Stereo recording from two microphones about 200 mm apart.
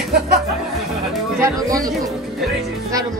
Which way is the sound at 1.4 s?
15° right (ahead or behind).